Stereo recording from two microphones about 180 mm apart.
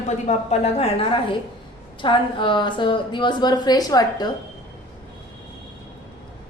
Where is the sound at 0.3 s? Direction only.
35° left (ahead or behind).